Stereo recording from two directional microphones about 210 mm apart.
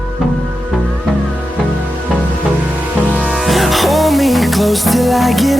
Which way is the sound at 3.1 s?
Centre (ahead or behind).